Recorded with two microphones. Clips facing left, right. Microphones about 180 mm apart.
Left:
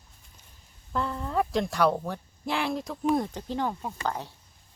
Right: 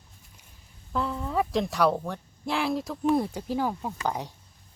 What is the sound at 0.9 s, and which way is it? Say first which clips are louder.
Speech: right 1 dB; centre (ahead or behind).